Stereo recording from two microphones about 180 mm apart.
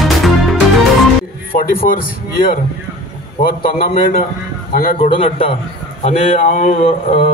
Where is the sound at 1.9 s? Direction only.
55° left (ahead or behind).